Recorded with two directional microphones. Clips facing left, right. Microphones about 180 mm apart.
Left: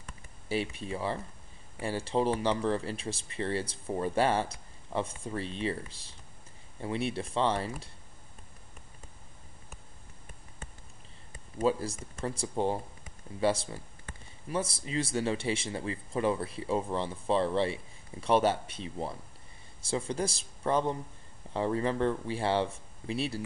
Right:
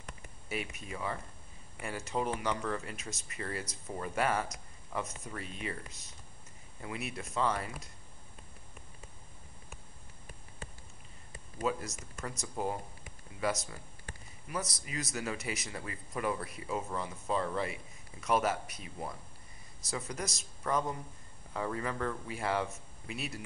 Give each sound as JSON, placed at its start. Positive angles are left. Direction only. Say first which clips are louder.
{"t": 0.5, "sound": "speech", "louder": "left 7 dB", "side_deg": 30}
{"t": 11.5, "sound": "speech", "louder": "left 6 dB", "side_deg": 30}